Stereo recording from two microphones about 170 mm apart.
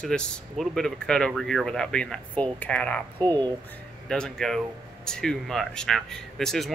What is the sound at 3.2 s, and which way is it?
Speech, 20° right (ahead or behind).